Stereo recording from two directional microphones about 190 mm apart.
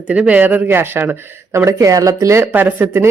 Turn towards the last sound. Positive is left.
turn(degrees=-10)  # may be behind; listen again after turning